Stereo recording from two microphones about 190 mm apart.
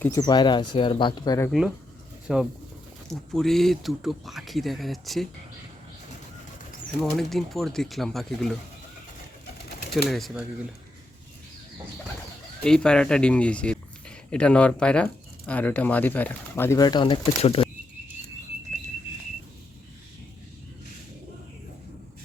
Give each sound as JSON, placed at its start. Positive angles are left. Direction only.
{"t": 0.0, "sound": "speech", "side_deg": 20}
{"t": 1.5, "sound": "speech", "side_deg": 0}
{"t": 7.0, "sound": "speech", "side_deg": 0}
{"t": 10.1, "sound": "speech", "side_deg": 0}
{"t": 12.6, "sound": "speech", "side_deg": 5}